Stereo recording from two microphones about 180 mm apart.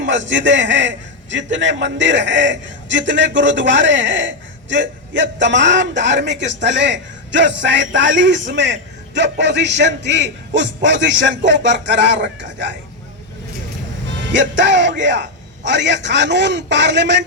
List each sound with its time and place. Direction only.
0.0 s a man's voice: 90° right; by 10.7 s 75° right (ahead or behind)
10.8 s a man's voice: 85° right
14.3 s a man's voice: 90° right